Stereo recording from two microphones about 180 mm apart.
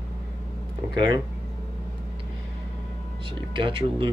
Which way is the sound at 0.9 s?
25° right (ahead or behind).